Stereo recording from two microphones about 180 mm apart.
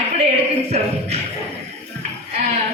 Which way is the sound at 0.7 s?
35° right (ahead or behind).